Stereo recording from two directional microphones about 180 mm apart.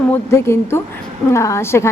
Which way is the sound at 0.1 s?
15° left (ahead or behind).